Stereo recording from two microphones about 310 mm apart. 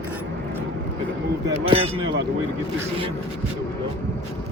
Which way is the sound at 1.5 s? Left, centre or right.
Centre.